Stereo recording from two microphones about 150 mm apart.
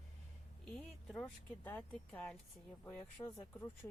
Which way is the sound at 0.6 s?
5° left (ahead or behind).